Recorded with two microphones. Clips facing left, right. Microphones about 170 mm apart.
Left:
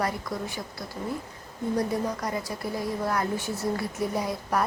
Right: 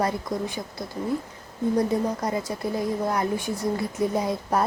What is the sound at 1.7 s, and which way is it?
Speech, 25° right (ahead or behind).